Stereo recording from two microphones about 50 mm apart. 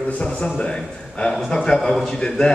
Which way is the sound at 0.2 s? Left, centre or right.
Centre.